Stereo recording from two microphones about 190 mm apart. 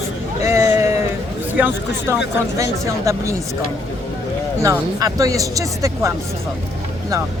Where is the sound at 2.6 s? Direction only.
15° right (ahead or behind).